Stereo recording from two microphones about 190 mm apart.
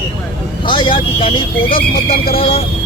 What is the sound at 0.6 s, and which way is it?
Speech, 25° left (ahead or behind).